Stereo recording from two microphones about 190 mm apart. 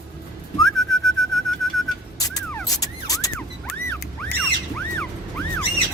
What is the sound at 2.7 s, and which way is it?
Vehicle, 20° left (ahead or behind).